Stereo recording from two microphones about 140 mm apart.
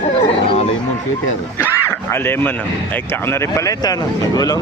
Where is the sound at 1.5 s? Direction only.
15° left (ahead or behind).